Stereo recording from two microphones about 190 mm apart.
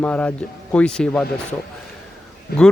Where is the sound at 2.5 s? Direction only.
55° left (ahead or behind).